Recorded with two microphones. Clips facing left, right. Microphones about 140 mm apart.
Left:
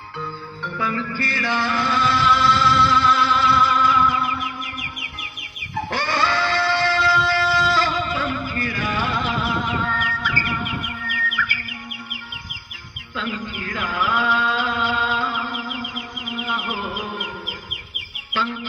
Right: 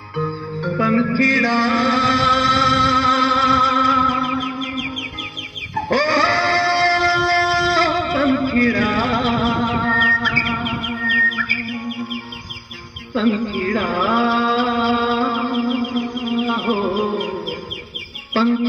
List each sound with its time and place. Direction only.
0.2 s music: 50° right (ahead or behind)
5.9 s a sound: 50° right (ahead or behind)
7.6 s music: 45° right (ahead or behind)
9.9 s music: 75° right (ahead or behind)
11.2 s music: 45° right (ahead or behind)
13.1 s music: 40° right (ahead or behind)
18.3 s bird: 40° right (ahead or behind)